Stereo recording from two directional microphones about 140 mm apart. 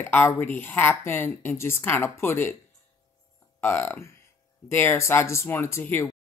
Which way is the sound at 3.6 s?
15° left (ahead or behind).